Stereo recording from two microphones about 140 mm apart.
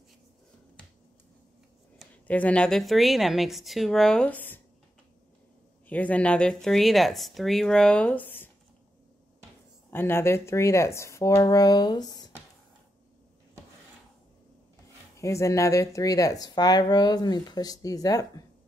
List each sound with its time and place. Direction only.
2.2 s speech: 10° left (ahead or behind)
5.9 s speech: 10° left (ahead or behind)
9.8 s speech: 15° left (ahead or behind)
15.1 s speech: 20° left (ahead or behind)